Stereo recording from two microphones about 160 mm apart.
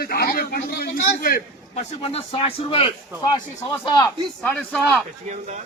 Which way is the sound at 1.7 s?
45° left (ahead or behind).